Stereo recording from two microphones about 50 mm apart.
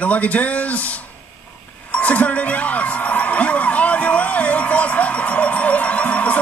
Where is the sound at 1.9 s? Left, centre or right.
Left.